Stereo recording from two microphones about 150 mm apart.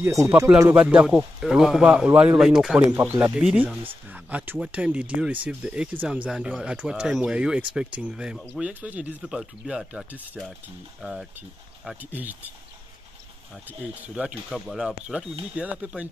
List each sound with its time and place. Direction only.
0.0 s speech: 20° right (ahead or behind)
0.7 s speech: 5° right (ahead or behind)
3.2 s speech: 15° right (ahead or behind)
14.0 s speech: 5° right (ahead or behind)